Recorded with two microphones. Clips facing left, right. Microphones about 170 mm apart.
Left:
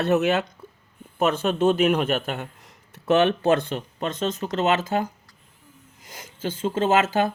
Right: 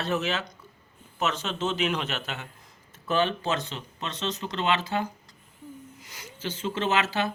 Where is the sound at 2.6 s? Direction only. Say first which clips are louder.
Left 11 dB; 70° left (ahead or behind); by 7.3 s 50° left (ahead or behind).